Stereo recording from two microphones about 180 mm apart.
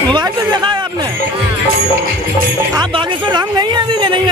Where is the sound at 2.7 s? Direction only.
25° right (ahead or behind).